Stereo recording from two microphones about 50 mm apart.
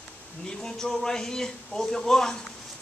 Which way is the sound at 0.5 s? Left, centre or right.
Centre.